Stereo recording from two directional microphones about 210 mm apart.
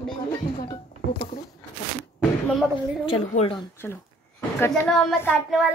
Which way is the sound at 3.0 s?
30° left (ahead or behind).